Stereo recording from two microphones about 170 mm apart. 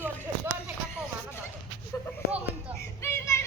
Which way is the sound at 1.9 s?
15° left (ahead or behind).